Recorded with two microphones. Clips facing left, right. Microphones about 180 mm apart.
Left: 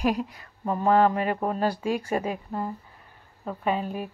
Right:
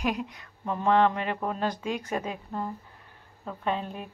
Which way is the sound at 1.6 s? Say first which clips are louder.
Left 4 dB; 5° left (ahead or behind).